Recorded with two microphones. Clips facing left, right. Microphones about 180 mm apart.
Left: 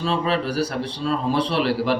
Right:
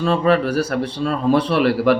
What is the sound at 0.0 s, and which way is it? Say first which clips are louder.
A man's voice: right 6 dB; 55° right (ahead or behind).